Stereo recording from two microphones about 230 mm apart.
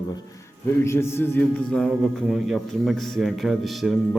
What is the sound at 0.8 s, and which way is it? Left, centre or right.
A man's voice, centre.